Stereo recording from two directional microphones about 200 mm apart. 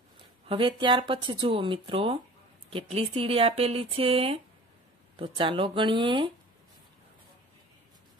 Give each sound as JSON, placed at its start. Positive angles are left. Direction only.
{"t": 0.5, "sound": "speech", "side_deg": -25}